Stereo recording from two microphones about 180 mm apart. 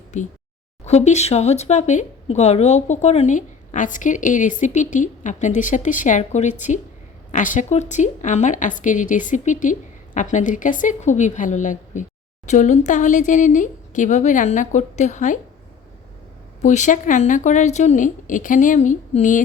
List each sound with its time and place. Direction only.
0.1 s speech: 40° left (ahead or behind)
16.6 s speech: 40° left (ahead or behind)